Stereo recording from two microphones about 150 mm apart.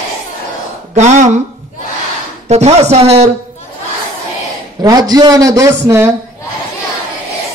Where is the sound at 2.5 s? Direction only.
45° right (ahead or behind).